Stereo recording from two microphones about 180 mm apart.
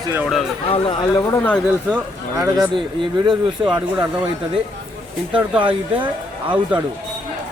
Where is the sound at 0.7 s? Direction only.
30° left (ahead or behind).